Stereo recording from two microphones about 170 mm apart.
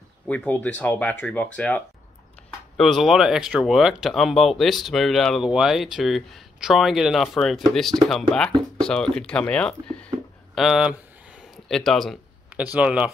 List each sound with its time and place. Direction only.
0.3 s speech: 10° left (ahead or behind)
2.8 s speech: centre (ahead or behind)
11.5 s a sound: centre (ahead or behind)
12.7 s speech: 5° right (ahead or behind)